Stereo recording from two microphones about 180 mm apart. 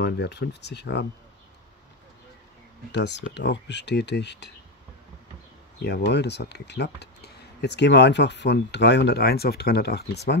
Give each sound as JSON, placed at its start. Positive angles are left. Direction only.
{"t": 0.0, "sound": "speech", "side_deg": 70}
{"t": 2.9, "sound": "speech", "side_deg": 75}
{"t": 5.8, "sound": "speech", "side_deg": 70}